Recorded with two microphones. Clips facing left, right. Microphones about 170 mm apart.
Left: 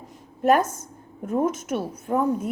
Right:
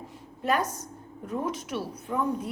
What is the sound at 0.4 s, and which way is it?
A woman's voice, 50° left (ahead or behind).